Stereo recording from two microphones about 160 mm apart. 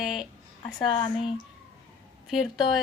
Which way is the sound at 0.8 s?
30° left (ahead or behind).